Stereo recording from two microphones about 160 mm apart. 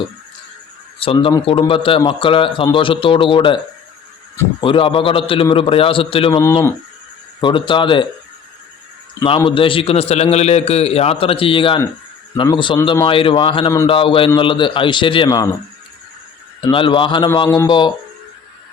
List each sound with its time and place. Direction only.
0.9 s a man's voice: 35° left (ahead or behind)
4.6 s a man's voice: 35° left (ahead or behind)
7.4 s a man's voice: 30° left (ahead or behind)
9.2 s a man's voice: 35° left (ahead or behind)
16.6 s a man's voice: 30° left (ahead or behind)